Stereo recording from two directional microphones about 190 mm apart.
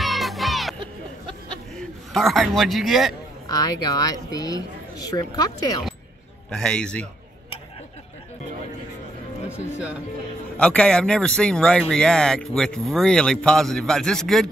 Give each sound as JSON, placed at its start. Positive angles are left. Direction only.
{"t": 0.0, "sound": "music", "side_deg": 0}
{"t": 1.8, "sound": "a man's voice", "side_deg": 0}
{"t": 3.4, "sound": "speech", "side_deg": 20}
{"t": 6.5, "sound": "speech", "side_deg": 5}
{"t": 10.6, "sound": "speech", "side_deg": 5}